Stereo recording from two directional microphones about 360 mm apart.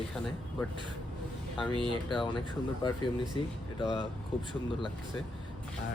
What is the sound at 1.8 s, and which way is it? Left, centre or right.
Speech, centre.